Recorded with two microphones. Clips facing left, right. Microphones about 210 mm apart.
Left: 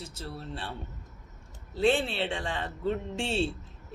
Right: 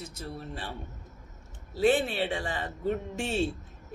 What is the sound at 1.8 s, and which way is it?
A man's voice, 10° right (ahead or behind).